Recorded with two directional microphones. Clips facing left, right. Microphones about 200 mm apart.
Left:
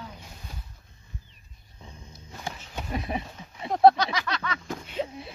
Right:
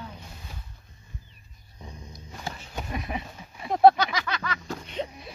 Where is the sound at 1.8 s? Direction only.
15° right (ahead or behind).